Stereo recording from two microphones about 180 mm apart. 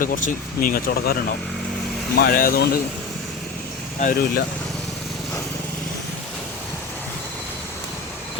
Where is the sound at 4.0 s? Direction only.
50° left (ahead or behind).